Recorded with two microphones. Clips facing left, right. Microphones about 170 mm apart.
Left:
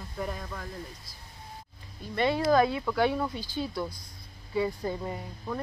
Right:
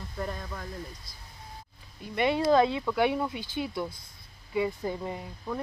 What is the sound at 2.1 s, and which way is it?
Speech, 20° right (ahead or behind).